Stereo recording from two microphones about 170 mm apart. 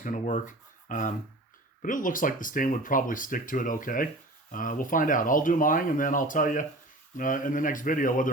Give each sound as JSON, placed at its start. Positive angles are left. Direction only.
{"t": 0.0, "sound": "speech", "side_deg": 50}